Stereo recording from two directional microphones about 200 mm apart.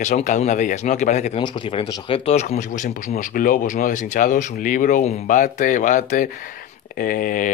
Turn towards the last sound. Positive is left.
turn(degrees=45)  # may be behind; listen again after turning